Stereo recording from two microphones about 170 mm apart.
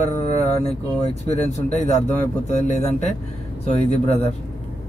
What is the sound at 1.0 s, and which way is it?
Speech, 40° left (ahead or behind).